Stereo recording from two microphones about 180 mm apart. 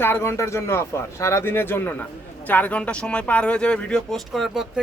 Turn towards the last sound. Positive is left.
turn(degrees=0)  # may be behind; listen again after turning